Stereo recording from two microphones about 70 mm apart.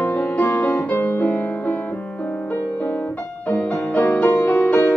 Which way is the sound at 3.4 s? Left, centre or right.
Centre.